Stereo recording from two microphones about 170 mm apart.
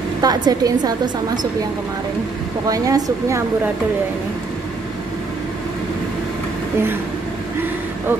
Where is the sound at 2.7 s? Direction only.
20° right (ahead or behind).